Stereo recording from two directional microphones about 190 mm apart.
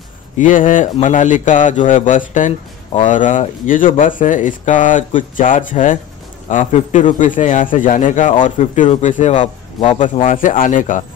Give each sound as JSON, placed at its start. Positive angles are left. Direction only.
{"t": 0.4, "sound": "a man's voice", "side_deg": 45}